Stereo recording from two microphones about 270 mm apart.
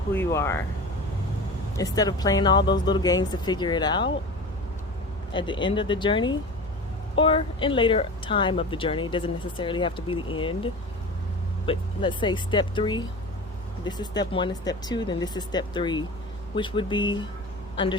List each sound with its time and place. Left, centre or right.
0.1 s speech: centre
1.7 s speech: centre
5.3 s speech: centre